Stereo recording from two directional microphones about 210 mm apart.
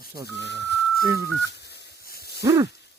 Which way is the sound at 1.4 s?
55° left (ahead or behind).